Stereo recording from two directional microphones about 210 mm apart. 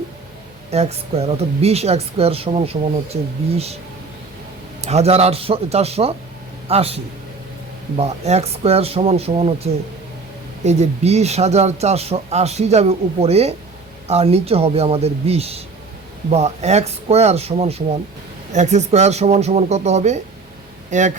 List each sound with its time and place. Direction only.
0.7 s a woman's voice: 30° right (ahead or behind)
4.8 s a woman's voice: 30° right (ahead or behind)
10.6 s a woman's voice: 30° right (ahead or behind)